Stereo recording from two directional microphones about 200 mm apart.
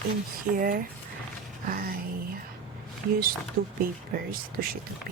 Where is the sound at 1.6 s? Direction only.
45° right (ahead or behind).